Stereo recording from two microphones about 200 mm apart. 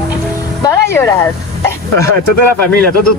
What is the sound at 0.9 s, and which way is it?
Speech, 10° left (ahead or behind).